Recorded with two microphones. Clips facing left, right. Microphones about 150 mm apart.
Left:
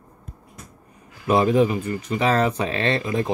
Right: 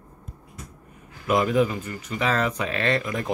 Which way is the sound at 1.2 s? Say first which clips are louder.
Left 3 dB; 30° left (ahead or behind).